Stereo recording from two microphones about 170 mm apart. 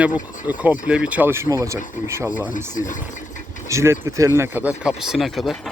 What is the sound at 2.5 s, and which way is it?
Speech, 50° left (ahead or behind).